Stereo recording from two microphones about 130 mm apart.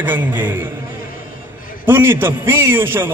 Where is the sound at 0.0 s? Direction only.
15° right (ahead or behind).